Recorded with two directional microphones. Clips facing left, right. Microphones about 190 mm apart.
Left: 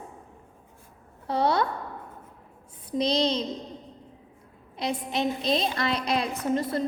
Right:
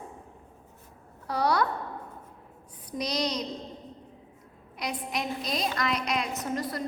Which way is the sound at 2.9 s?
25° left (ahead or behind).